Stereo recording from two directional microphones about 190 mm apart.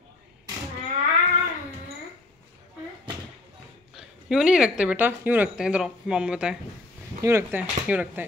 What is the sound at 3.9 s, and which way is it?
Speech, 5° right (ahead or behind).